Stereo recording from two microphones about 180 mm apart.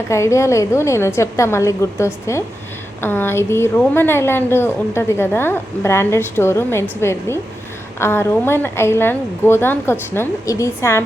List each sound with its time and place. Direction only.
0.1 s a woman's voice: 15° left (ahead or behind)